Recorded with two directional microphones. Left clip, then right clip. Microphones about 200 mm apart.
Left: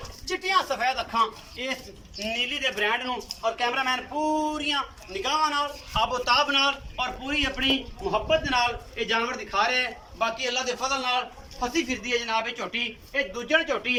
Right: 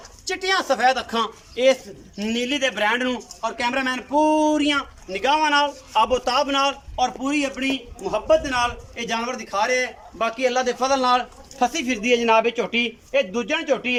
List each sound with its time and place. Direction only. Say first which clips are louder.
0.3 s speech: right 3 dB; 50° right (ahead or behind)
4.2 s a sound: right 9 dB; 25° right (ahead or behind)
4.4 s a man's voice: right 7 dB; 50° right (ahead or behind)
11.7 s speech: right 6 dB; 60° right (ahead or behind)